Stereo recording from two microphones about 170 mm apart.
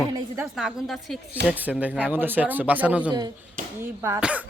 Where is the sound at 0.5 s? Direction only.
Centre (ahead or behind).